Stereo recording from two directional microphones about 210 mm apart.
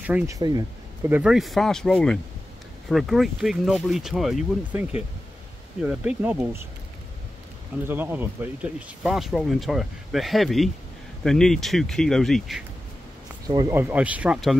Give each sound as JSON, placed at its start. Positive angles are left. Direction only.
{"t": 0.0, "sound": "speech", "side_deg": -5}
{"t": 0.4, "sound": "speech", "side_deg": -20}
{"t": 7.9, "sound": "speech", "side_deg": -10}
{"t": 13.5, "sound": "speech", "side_deg": -15}